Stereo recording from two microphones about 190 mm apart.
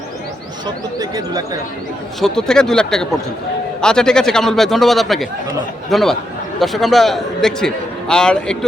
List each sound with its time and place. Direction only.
0.9 s speech: 20° right (ahead or behind)
2.2 s a man's voice: 5° left (ahead or behind)